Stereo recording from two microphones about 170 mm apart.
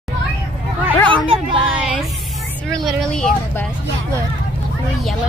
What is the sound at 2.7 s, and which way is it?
Vehicle, 5° left (ahead or behind).